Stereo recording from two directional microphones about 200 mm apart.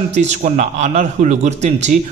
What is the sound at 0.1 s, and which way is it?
A man's voice, 35° right (ahead or behind).